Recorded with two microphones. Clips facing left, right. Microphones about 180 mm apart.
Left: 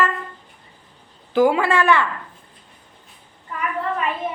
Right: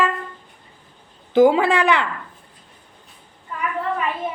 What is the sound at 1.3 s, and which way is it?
Speech, 20° right (ahead or behind).